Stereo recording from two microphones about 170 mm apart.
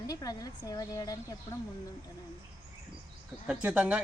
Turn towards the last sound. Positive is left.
turn(degrees=-10)  # may be behind; listen again after turning